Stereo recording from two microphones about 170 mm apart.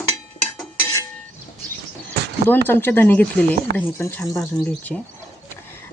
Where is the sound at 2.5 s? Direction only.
10° left (ahead or behind).